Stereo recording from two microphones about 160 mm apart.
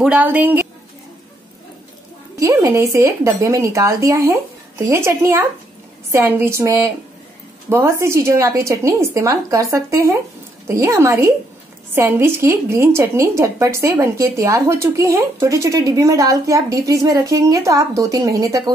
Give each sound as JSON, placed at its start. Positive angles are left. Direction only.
{"t": 0.0, "sound": "a woman's voice", "side_deg": -10}
{"t": 2.3, "sound": "a woman's voice", "side_deg": -20}